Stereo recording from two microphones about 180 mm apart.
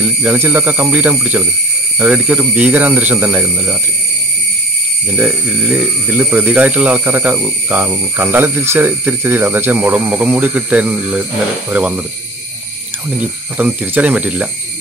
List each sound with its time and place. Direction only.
0.0 s speech: 10° right (ahead or behind)
5.1 s speech: 5° right (ahead or behind)
13.6 s speech: 10° right (ahead or behind)